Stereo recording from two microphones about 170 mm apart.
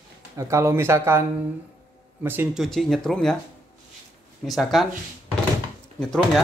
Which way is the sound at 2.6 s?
Centre (ahead or behind).